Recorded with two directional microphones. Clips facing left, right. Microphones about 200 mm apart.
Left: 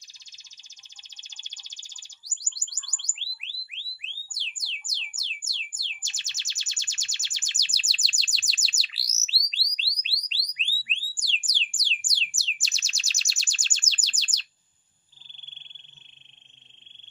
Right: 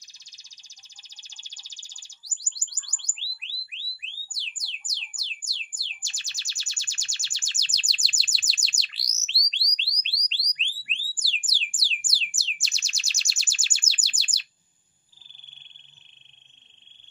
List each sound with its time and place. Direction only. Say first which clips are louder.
1.1 s bird: left 2 dB; 20° left (ahead or behind)
10.5 s alarm: left 2 dB; 5° left (ahead or behind)
12.0 s bird: even; 5° right (ahead or behind)